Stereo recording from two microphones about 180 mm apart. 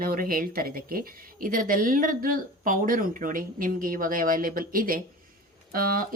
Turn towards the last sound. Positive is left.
turn(degrees=-55)  # may be behind; listen again after turning